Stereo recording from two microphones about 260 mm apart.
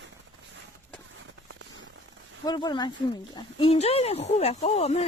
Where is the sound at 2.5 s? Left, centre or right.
Centre.